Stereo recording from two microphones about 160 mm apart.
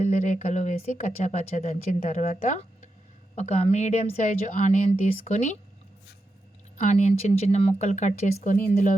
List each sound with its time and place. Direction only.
0.0 s a woman's voice: 45° left (ahead or behind)
6.7 s speech: 45° left (ahead or behind)